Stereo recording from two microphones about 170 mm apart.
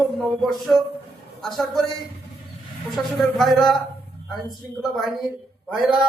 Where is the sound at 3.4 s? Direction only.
Centre (ahead or behind).